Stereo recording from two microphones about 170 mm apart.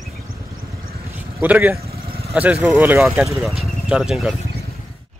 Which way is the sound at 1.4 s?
10° right (ahead or behind).